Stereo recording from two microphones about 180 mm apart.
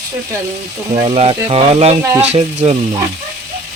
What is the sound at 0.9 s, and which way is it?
Speech, 35° right (ahead or behind).